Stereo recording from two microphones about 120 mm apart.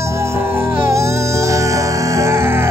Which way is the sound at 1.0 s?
25° right (ahead or behind).